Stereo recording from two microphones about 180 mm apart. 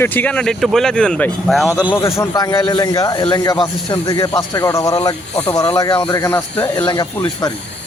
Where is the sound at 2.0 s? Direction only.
15° left (ahead or behind).